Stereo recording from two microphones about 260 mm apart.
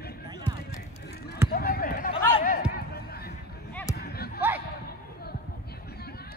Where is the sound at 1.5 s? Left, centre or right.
Left.